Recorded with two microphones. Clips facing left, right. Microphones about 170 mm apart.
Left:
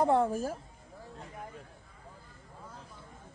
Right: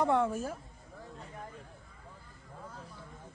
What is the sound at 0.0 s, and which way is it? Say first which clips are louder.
Speech: left 2 dB; 35° left (ahead or behind).